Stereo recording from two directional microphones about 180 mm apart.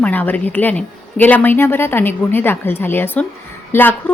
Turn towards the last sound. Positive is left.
turn(degrees=10)  # may be behind; listen again after turning